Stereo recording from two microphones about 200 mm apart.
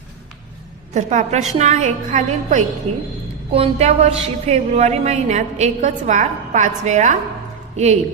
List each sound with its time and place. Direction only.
0.9 s a woman's voice: 35° right (ahead or behind)